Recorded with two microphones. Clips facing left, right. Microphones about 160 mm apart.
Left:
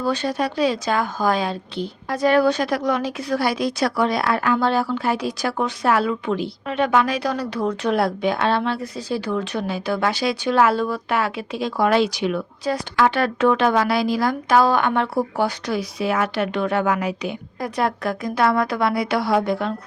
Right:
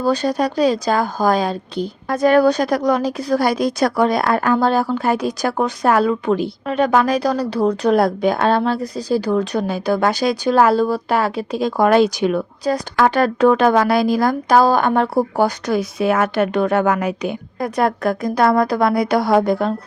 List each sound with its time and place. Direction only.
0.0 s a woman's voice: 40° right (ahead or behind)